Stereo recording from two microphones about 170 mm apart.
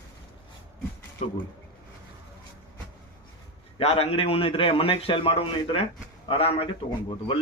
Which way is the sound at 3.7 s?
35° left (ahead or behind).